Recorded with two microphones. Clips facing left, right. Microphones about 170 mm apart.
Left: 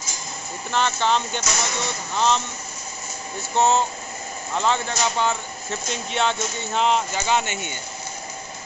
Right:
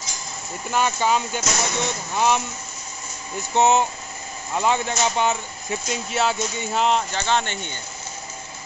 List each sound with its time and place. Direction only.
0.7 s speech: 10° right (ahead or behind)
3.5 s speech: 15° right (ahead or behind)
5.9 s speech: 5° right (ahead or behind)
7.2 s speech: 10° left (ahead or behind)